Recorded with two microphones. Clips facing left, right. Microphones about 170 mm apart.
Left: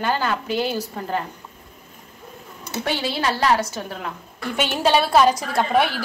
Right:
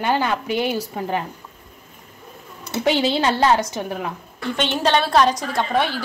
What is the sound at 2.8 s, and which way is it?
A woman's voice, 20° right (ahead or behind).